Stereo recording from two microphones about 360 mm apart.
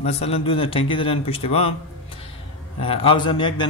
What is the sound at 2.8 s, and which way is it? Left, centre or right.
Speech, centre.